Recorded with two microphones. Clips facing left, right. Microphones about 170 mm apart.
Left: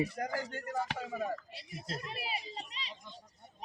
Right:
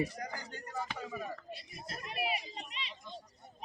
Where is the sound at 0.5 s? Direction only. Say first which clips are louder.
Left 4 dB; 55° left (ahead or behind); by 2.0 s 75° left (ahead or behind).